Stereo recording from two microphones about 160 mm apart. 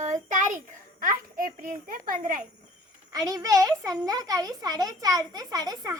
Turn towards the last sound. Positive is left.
turn(degrees=-25)  # may be behind; listen again after turning